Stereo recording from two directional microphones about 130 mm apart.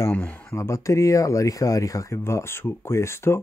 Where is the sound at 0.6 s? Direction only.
25° left (ahead or behind).